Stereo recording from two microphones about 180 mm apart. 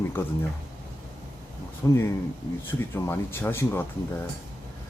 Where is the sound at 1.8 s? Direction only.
15° left (ahead or behind).